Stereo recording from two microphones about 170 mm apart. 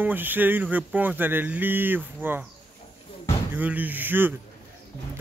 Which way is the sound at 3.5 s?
10° right (ahead or behind).